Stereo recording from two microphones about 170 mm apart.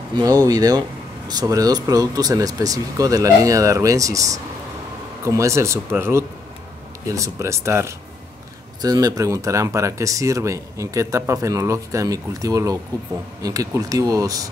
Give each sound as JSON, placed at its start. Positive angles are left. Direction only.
{"t": 0.1, "sound": "speech", "side_deg": -20}